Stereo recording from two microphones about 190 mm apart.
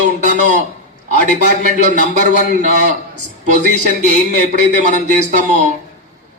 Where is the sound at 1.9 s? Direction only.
40° right (ahead or behind).